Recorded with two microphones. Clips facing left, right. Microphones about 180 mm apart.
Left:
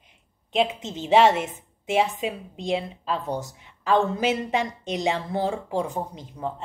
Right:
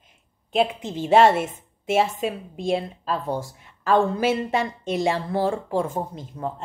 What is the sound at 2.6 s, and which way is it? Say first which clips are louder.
Speech: right 2 dB; 20° left (ahead or behind).